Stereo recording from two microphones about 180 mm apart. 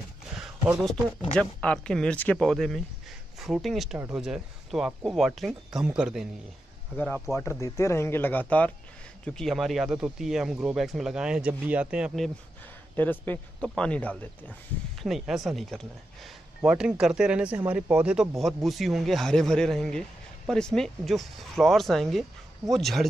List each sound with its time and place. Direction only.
1.3 s speech: 5° left (ahead or behind)
7.3 s speech: 15° left (ahead or behind); by 12.3 s 5° right (ahead or behind)
12.9 s speech: 10° left (ahead or behind)